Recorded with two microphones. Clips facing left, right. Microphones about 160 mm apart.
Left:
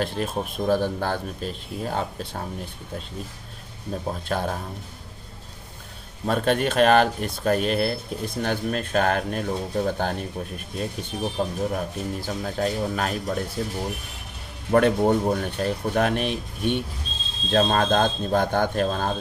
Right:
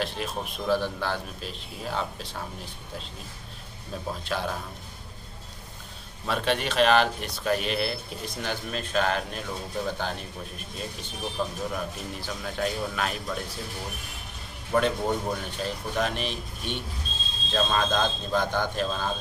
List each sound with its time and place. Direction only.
0.0 s speech: 45° left (ahead or behind)
3.9 s speech: 45° left (ahead or behind)
6.2 s speech: 45° left (ahead or behind)
11.3 s a man's voice: 40° left (ahead or behind)
13.6 s speech: 55° left (ahead or behind)